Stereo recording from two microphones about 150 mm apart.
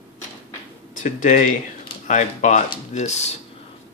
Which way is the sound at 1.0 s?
60° left (ahead or behind).